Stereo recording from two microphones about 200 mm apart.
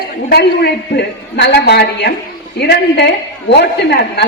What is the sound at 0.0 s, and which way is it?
A woman's voice, 50° left (ahead or behind).